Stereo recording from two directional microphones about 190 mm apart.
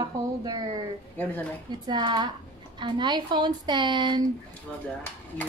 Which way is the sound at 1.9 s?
25° right (ahead or behind).